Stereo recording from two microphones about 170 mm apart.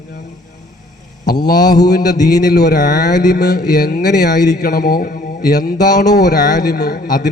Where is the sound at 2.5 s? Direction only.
70° left (ahead or behind).